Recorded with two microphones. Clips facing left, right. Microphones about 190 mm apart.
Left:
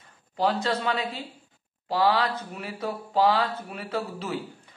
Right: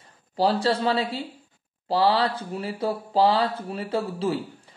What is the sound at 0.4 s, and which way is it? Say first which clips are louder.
Speech: right 3 dB; 30° right (ahead or behind).